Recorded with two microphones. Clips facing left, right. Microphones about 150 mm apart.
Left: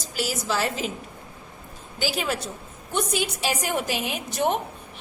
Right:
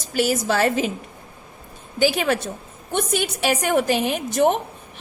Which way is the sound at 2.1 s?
65° right (ahead or behind).